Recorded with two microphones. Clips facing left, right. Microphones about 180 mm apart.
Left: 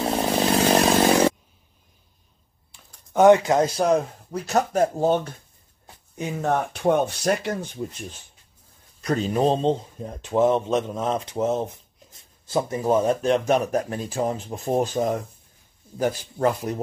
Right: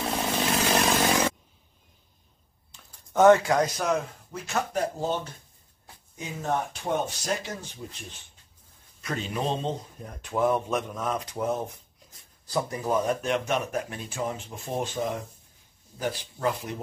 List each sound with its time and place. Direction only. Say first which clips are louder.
0.0 s chainsaw: left 6 dB; 35° left (ahead or behind)
2.7 s speech: left 3 dB; 15° left (ahead or behind); by 4.8 s 40° left (ahead or behind)
5.0 s speech: left 8 dB; 55° left (ahead or behind)
9.0 s a man's voice: left 9 dB; 40° left (ahead or behind)